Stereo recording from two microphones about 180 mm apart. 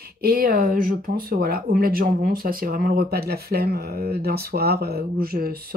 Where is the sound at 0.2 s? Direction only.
55° right (ahead or behind).